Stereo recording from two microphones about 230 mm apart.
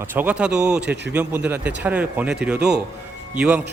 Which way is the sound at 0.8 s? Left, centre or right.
Right.